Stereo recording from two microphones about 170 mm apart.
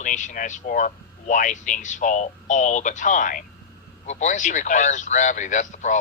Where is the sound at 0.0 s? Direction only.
45° left (ahead or behind).